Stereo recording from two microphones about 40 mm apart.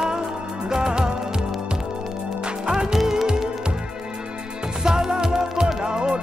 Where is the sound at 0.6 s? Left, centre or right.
Centre.